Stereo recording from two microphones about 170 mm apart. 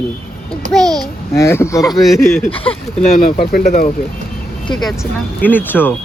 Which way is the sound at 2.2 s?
10° left (ahead or behind).